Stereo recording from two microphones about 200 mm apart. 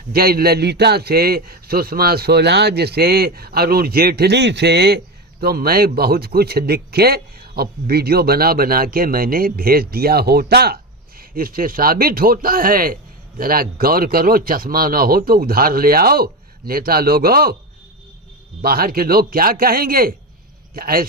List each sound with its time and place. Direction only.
0.1 s a man's voice: 50° right (ahead or behind)
18.6 s a man's voice: 50° right (ahead or behind)